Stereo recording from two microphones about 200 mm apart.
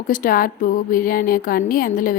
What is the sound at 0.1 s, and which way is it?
A woman's voice, 45° left (ahead or behind).